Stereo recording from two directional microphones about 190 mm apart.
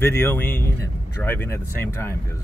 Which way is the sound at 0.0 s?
10° left (ahead or behind).